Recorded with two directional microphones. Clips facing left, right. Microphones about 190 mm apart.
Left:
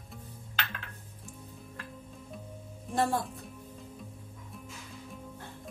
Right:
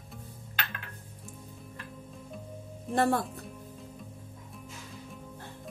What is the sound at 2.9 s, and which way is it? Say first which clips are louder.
Speech: right 3 dB; 60° right (ahead or behind).